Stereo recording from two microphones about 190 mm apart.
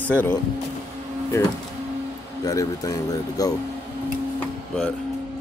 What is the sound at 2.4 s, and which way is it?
Speech, 20° left (ahead or behind).